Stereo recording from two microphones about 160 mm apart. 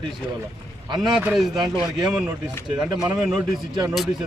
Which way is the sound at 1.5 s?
25° right (ahead or behind).